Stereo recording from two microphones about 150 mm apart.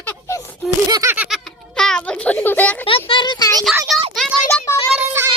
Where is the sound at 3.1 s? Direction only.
30° left (ahead or behind).